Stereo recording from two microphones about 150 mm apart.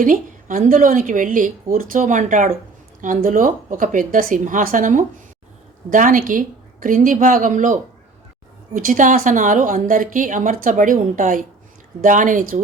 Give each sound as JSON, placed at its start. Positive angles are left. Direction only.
{"t": 0.0, "sound": "a woman's voice", "side_deg": -65}